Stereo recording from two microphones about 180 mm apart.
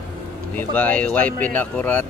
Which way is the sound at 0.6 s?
10° left (ahead or behind).